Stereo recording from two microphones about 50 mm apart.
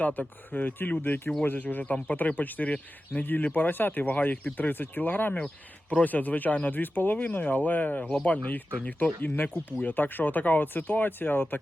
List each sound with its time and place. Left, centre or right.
0.0 s speech: left